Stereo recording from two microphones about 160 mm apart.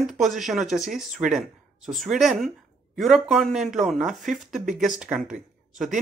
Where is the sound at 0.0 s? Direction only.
Centre (ahead or behind).